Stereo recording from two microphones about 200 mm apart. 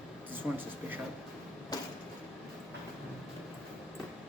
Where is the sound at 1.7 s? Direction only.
20° left (ahead or behind).